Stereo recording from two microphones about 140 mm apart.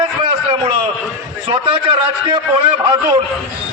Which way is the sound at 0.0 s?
40° right (ahead or behind).